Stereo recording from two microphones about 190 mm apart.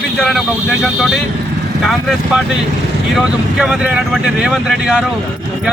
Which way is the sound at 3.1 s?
5° right (ahead or behind).